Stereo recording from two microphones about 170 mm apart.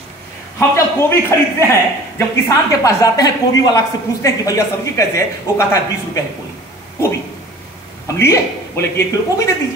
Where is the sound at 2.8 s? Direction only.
20° left (ahead or behind).